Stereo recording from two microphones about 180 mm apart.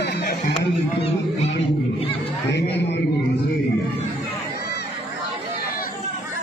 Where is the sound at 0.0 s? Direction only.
70° left (ahead or behind).